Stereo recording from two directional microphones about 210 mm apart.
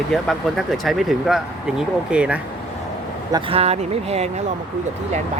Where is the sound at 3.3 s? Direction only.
30° right (ahead or behind).